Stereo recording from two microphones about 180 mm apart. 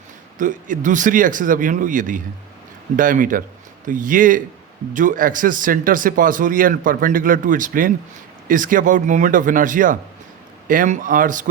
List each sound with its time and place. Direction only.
0.3 s speech: 45° right (ahead or behind)